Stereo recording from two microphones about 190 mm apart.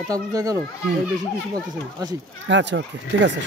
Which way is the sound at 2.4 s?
75° right (ahead or behind).